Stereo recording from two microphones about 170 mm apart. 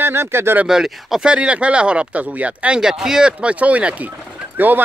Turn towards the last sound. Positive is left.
turn(degrees=-10)  # may be behind; listen again after turning